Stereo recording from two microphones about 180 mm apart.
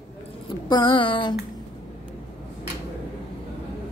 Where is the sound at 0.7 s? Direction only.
25° left (ahead or behind).